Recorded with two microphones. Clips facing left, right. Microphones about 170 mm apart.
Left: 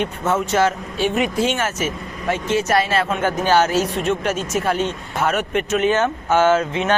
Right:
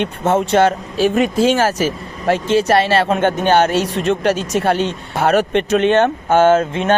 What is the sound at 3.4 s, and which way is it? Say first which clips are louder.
Speech: right 1 dB; 60° right (ahead or behind).